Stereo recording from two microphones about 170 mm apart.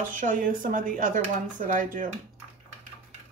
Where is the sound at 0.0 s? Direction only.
50° right (ahead or behind).